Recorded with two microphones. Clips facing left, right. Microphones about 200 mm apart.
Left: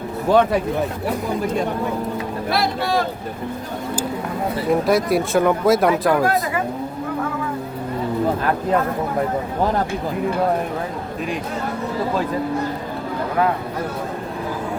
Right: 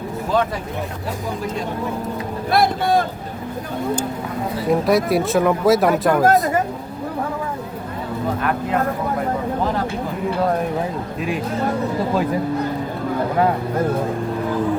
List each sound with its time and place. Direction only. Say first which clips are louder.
2.5 s speech: right 4 dB; 50° right (ahead or behind)
4.7 s speech: right 1 dB; centre (ahead or behind)
6.2 s speech: right 5 dB; 45° right (ahead or behind)